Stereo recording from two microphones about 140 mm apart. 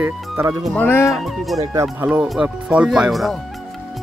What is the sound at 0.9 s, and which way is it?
Speech, 20° left (ahead or behind).